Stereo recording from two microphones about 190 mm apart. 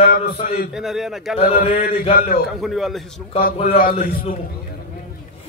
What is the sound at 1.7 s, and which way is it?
Speech, 50° left (ahead or behind).